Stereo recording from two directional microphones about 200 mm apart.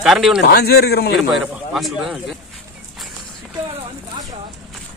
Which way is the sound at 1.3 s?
Centre (ahead or behind).